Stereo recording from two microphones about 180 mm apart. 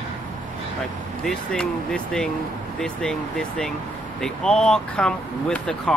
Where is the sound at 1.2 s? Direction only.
5° left (ahead or behind).